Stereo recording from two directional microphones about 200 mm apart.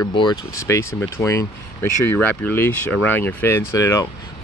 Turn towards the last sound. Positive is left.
turn(degrees=15)  # may be behind; listen again after turning